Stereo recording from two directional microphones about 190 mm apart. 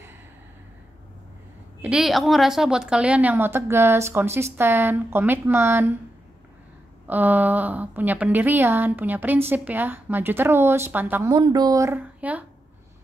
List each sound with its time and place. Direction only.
1.8 s a woman's voice: 5° right (ahead or behind)
7.1 s a woman's voice: 10° right (ahead or behind)
11.3 s a woman's voice: 20° right (ahead or behind)